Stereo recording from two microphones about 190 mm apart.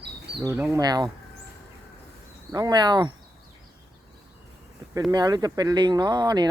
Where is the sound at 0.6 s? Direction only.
15° right (ahead or behind).